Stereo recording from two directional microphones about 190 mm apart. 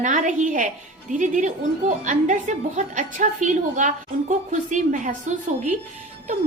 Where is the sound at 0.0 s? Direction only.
40° right (ahead or behind).